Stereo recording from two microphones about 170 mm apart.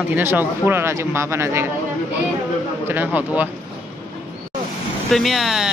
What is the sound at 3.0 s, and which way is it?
Speech, 10° right (ahead or behind).